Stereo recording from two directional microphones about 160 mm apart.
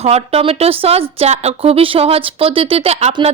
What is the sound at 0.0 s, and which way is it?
A woman's voice, 40° right (ahead or behind).